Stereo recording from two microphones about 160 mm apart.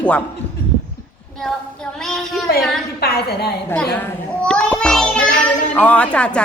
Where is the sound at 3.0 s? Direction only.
90° left.